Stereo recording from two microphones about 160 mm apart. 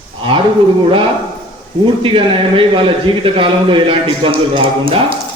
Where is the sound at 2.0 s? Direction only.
35° right (ahead or behind).